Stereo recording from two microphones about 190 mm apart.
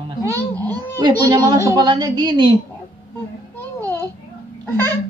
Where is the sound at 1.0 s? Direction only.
20° right (ahead or behind).